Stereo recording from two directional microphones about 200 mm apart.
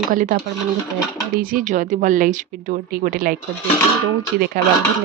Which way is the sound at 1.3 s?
40° right (ahead or behind).